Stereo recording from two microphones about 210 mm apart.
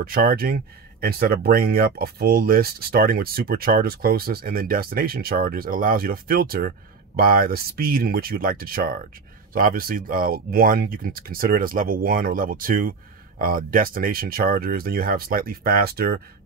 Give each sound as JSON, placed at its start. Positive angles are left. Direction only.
{"t": 0.0, "sound": "speech", "side_deg": -45}